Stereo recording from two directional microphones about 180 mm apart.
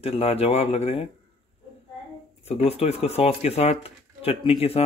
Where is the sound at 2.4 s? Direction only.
35° left (ahead or behind).